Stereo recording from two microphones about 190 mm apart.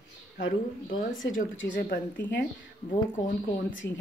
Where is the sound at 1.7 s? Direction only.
50° left (ahead or behind).